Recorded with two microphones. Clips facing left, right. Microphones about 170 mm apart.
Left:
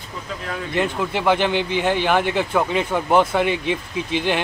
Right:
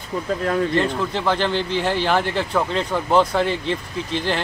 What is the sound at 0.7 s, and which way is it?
Speech, 10° left (ahead or behind).